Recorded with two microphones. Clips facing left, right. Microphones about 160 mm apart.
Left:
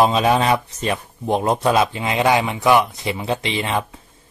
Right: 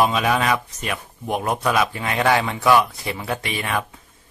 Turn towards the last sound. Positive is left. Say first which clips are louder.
# left 3 dB
turn(degrees=25)  # may be behind; listen again after turning